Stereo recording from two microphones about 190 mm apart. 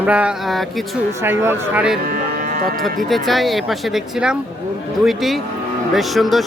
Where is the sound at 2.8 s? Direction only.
Centre (ahead or behind).